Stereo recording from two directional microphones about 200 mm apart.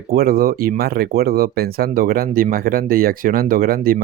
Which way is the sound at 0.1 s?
50° right (ahead or behind).